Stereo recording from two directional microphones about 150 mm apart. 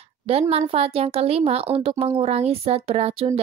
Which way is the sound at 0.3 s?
45° right (ahead or behind).